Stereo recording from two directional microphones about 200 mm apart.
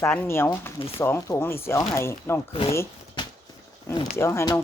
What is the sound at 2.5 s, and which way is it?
Speech, 30° left (ahead or behind).